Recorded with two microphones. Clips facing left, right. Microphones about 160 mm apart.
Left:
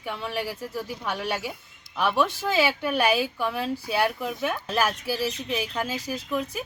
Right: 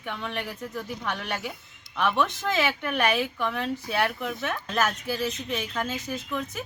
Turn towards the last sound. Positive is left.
turn(degrees=10)  # may be behind; listen again after turning